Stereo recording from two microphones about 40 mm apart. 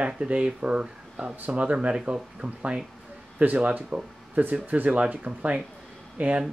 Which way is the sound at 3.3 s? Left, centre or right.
Right.